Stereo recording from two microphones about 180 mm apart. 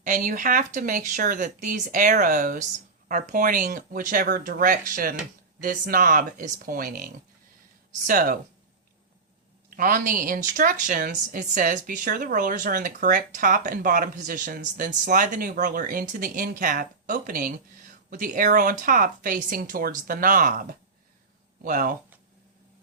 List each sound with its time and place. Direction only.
0.0 s speech: 45° right (ahead or behind)
9.6 s speech: 50° right (ahead or behind)